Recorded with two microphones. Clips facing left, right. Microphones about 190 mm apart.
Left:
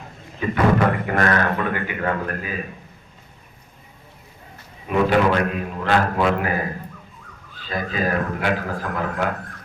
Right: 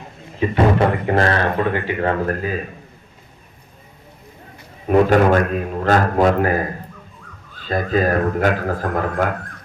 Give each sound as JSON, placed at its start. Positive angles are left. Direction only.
{"t": 0.3, "sound": "speech", "side_deg": -25}
{"t": 4.9, "sound": "a man's voice", "side_deg": -45}
{"t": 7.7, "sound": "a man's voice", "side_deg": -45}